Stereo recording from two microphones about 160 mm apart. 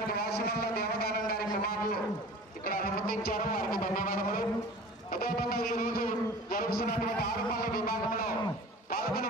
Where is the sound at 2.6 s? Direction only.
70° left (ahead or behind).